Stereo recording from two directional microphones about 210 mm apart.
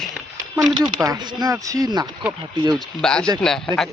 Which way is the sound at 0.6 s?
20° right (ahead or behind).